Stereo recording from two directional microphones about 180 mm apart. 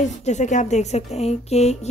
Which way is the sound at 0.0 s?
40° left (ahead or behind).